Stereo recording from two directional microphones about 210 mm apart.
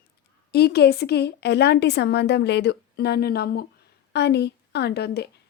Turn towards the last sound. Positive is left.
turn(degrees=50)  # may be behind; listen again after turning